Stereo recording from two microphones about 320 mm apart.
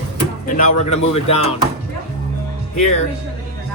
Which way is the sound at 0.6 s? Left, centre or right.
Left.